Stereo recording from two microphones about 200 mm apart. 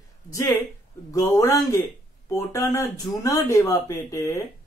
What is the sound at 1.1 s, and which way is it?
Speech, 15° left (ahead or behind).